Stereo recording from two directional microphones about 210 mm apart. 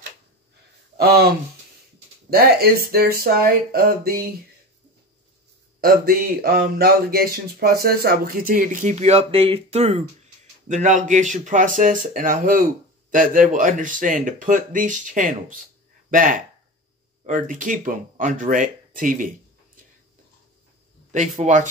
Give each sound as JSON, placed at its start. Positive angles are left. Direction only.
{"t": 0.9, "sound": "speech", "side_deg": -50}
{"t": 2.3, "sound": "speech", "side_deg": -45}
{"t": 5.8, "sound": "speech", "side_deg": -45}
{"t": 21.1, "sound": "speech", "side_deg": -35}